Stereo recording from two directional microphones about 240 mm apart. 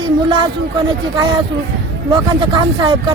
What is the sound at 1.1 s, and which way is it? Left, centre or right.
Speech, centre.